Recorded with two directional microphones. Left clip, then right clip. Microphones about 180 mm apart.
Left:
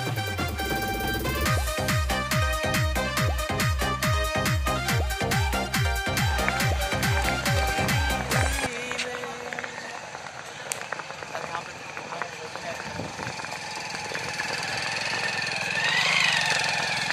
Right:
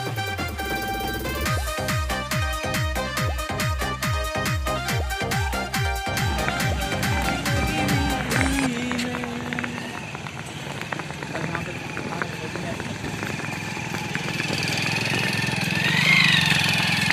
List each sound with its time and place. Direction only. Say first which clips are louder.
0.4 s music: right 1 dB; centre (ahead or behind)
15.8 s vehicle: right 4 dB; 35° left (ahead or behind)